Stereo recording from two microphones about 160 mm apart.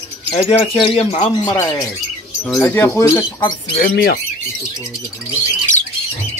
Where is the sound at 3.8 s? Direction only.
70° left (ahead or behind).